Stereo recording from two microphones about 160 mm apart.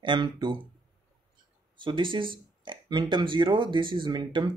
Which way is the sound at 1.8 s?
30° right (ahead or behind).